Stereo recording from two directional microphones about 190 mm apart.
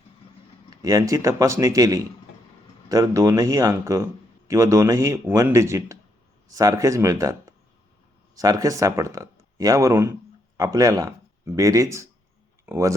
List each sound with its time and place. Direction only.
0.7 s speech: 20° right (ahead or behind)